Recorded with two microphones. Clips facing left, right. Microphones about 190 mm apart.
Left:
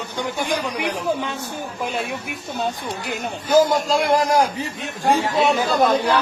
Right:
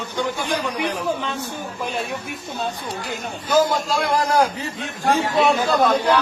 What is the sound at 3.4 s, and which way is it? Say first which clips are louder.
A man's voice: left 2 dB; 15° left (ahead or behind).